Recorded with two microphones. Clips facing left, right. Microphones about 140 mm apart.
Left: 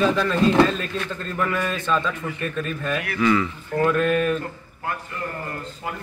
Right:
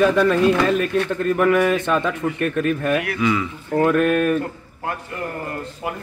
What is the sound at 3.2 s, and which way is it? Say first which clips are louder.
Speech: left 4 dB; 15° right (ahead or behind).